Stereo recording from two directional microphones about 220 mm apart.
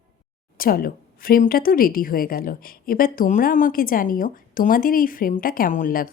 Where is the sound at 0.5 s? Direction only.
40° left (ahead or behind).